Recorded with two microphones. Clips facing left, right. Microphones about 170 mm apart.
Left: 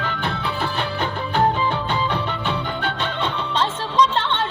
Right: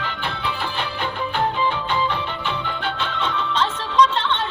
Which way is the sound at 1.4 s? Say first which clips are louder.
Left 3 dB; 40° left (ahead or behind).